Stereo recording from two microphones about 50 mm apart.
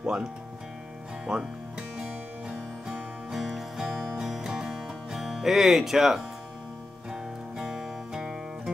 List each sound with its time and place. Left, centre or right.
0.0 s speech: centre
1.2 s music: centre
3.3 s music: centre